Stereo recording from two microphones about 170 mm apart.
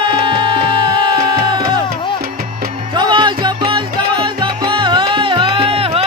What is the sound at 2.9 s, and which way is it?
Music, 25° right (ahead or behind).